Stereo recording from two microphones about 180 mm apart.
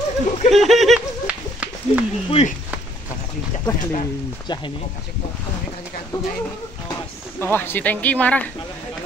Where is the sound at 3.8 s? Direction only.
40° left (ahead or behind).